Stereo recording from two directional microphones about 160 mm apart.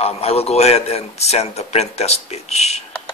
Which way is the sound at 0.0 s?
40° left (ahead or behind).